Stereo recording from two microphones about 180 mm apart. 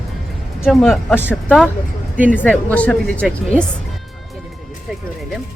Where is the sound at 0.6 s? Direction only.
Centre (ahead or behind).